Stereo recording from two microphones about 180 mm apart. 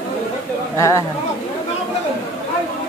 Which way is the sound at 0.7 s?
15° left (ahead or behind).